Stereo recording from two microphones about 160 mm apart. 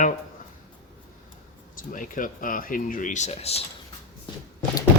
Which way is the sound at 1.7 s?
55° left (ahead or behind).